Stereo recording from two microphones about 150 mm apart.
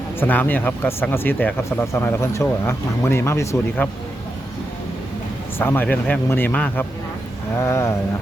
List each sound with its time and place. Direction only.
0.2 s speech: 10° left (ahead or behind)
5.5 s speech: 15° left (ahead or behind)